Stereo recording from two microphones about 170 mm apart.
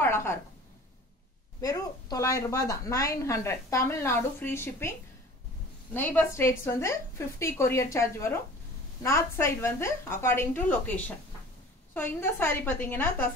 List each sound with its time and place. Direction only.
0.0 s a sound: 15° left (ahead or behind)
1.6 s a woman's voice: 20° left (ahead or behind)
5.9 s a woman's voice: 10° left (ahead or behind)